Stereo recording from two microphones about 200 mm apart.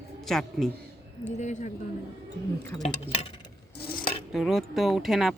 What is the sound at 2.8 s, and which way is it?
Speech, 35° left (ahead or behind).